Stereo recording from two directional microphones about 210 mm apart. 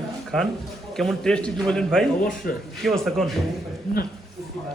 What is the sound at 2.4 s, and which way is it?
Speech, 45° left (ahead or behind).